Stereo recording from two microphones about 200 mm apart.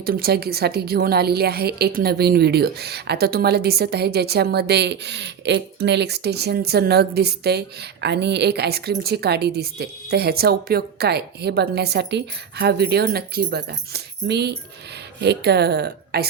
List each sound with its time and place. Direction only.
0.0 s a woman's voice: 50° right (ahead or behind)